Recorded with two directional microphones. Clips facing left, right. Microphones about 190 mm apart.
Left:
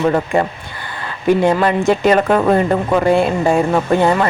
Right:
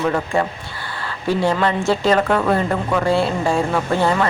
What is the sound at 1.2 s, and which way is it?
Speech, 15° left (ahead or behind).